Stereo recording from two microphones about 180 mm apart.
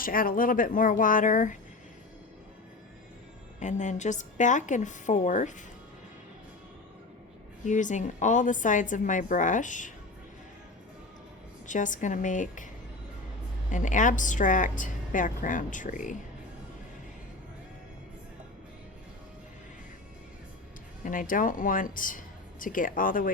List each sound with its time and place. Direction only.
0.0 s a woman's voice: 50° left (ahead or behind)
3.6 s a woman's voice: 40° left (ahead or behind)
7.6 s a woman's voice: 45° left (ahead or behind)
11.6 s a woman's voice: 45° left (ahead or behind)
13.7 s a woman's voice: 45° left (ahead or behind)
21.0 s a woman's voice: 45° left (ahead or behind)